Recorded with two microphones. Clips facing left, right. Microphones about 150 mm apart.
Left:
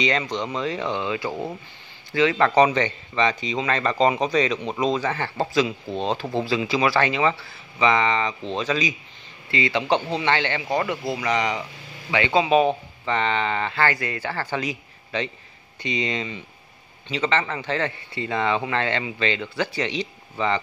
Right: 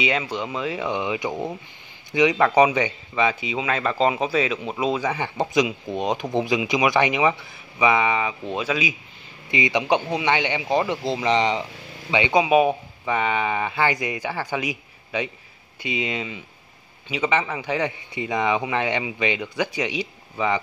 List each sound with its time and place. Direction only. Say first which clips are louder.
0.0 s speech: left 1 dB; 10° right (ahead or behind)